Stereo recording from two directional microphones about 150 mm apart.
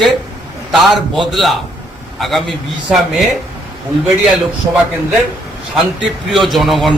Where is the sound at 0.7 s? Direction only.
Centre (ahead or behind).